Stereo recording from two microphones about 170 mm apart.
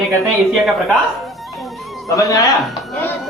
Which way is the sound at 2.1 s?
20° left (ahead or behind).